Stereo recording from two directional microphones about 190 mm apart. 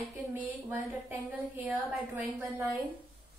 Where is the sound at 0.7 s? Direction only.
10° right (ahead or behind).